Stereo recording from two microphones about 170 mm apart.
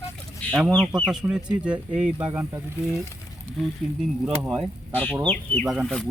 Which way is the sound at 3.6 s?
Centre (ahead or behind).